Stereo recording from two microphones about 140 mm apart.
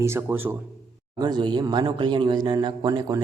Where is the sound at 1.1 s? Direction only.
30° right (ahead or behind).